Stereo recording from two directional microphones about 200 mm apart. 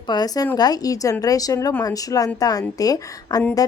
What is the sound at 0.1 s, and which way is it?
A woman's voice, 20° left (ahead or behind).